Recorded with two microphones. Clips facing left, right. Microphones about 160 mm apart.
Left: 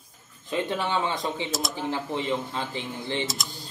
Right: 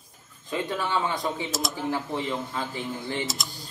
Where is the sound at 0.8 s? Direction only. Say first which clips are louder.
Even; 20° left (ahead or behind).